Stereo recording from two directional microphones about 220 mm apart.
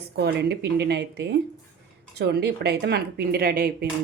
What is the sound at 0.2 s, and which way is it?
A woman's voice, 45° right (ahead or behind).